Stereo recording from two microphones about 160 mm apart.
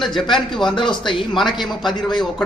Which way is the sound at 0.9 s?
30° left (ahead or behind).